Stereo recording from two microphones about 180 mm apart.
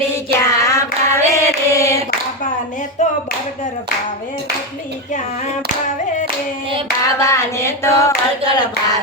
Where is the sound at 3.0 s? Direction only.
40° left (ahead or behind).